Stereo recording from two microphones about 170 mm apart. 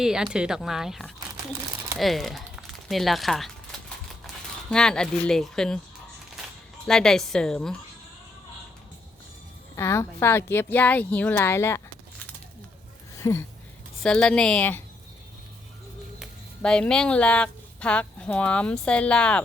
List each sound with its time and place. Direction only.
0.0 s speech: 5° right (ahead or behind)
4.7 s speech: 5° left (ahead or behind)
6.8 s speech: 5° left (ahead or behind)
9.7 s speech: 15° left (ahead or behind)
13.1 s a sound: 20° left (ahead or behind)
14.0 s speech: 5° left (ahead or behind)
16.2 s speech: 5° left (ahead or behind)